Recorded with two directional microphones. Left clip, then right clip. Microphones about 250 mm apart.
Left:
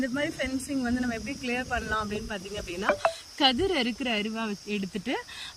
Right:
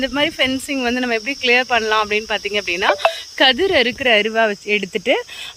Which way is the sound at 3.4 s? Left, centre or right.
Centre.